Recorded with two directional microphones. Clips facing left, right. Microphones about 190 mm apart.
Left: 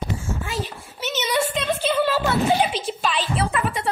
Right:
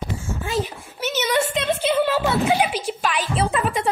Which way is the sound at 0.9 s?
10° right (ahead or behind).